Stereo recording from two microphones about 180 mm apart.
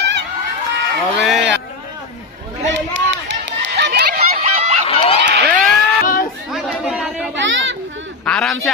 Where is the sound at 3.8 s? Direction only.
60° right (ahead or behind).